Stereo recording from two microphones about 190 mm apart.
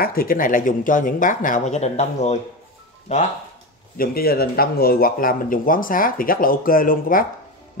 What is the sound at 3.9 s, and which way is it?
A man's voice, 50° left (ahead or behind).